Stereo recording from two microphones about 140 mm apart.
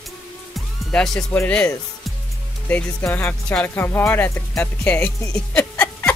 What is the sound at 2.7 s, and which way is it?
Speech, 15° left (ahead or behind).